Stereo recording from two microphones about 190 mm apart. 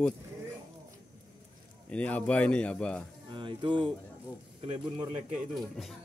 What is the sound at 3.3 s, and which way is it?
Speech, 25° right (ahead or behind).